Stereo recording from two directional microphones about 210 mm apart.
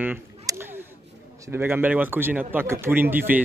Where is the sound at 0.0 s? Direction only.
10° right (ahead or behind).